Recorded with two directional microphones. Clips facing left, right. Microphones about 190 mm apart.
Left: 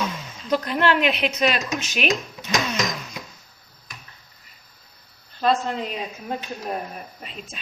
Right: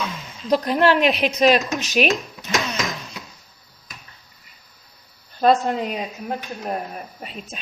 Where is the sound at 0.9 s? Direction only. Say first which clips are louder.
Right 3 dB; 40° right (ahead or behind).